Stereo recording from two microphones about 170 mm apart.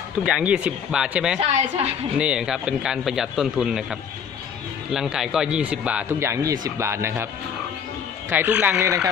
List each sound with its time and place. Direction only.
0.2 s a man's voice: 5° right (ahead or behind)
1.4 s a woman's voice: 40° right (ahead or behind)
2.1 s a man's voice: 5° right (ahead or behind)
8.3 s speech: 10° right (ahead or behind)